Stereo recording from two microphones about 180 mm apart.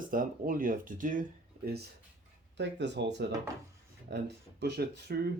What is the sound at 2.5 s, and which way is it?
Speech, 75° right (ahead or behind).